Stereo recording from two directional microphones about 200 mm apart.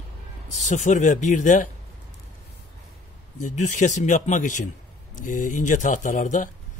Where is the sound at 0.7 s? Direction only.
40° left (ahead or behind).